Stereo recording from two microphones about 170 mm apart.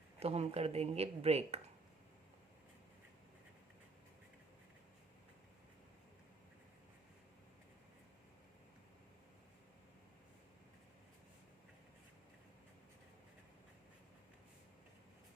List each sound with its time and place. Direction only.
0.2 s speech: 40° right (ahead or behind)